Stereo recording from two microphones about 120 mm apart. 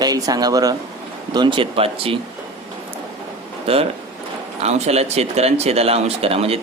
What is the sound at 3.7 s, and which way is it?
Speech, 55° right (ahead or behind).